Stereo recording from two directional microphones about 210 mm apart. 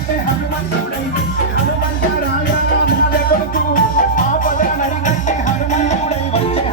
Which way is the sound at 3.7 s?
40° left (ahead or behind).